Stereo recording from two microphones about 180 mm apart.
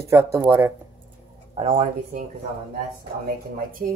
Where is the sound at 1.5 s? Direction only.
35° right (ahead or behind).